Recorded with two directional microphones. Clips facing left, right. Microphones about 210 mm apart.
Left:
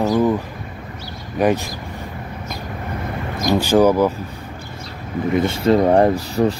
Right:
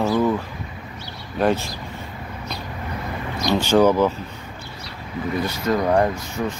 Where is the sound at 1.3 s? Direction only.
10° left (ahead or behind).